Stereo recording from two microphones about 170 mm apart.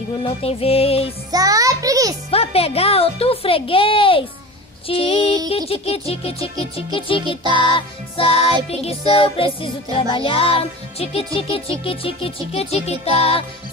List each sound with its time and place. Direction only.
0.2 s music: 35° left (ahead or behind)
1.3 s music: 20° right (ahead or behind)
2.3 s music: 35° left (ahead or behind)
7.4 s music: 25° right (ahead or behind)
8.6 s music: 35° left (ahead or behind)